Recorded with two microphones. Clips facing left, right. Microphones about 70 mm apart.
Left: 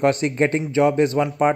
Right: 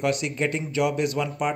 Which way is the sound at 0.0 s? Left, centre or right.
Left.